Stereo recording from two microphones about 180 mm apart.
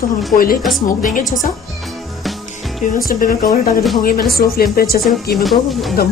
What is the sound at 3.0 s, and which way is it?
A woman's voice, 50° left (ahead or behind).